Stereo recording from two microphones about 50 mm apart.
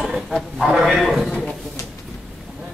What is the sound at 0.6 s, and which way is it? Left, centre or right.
Speech, centre.